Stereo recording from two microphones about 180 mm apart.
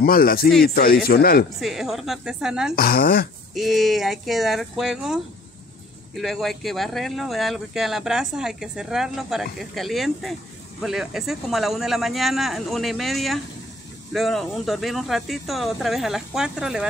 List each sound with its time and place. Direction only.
0.0 s speech: 55° left (ahead or behind)
1.6 s speech: centre (ahead or behind)
2.7 s speech: 55° left (ahead or behind)
3.5 s speech: centre (ahead or behind)